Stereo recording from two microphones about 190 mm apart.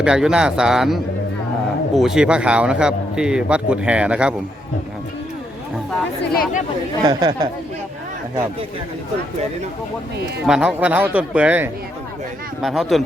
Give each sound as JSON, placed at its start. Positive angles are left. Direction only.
{"t": 0.0, "sound": "a man's voice", "side_deg": -5}
{"t": 6.3, "sound": "speech", "side_deg": 50}
{"t": 7.0, "sound": "speech", "side_deg": -20}
{"t": 10.4, "sound": "a man's voice", "side_deg": -5}